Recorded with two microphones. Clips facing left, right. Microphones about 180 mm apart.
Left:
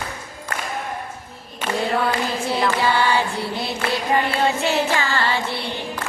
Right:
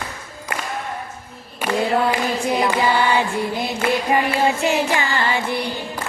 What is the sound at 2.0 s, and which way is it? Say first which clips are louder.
Singing: right 2 dB; 15° right (ahead or behind).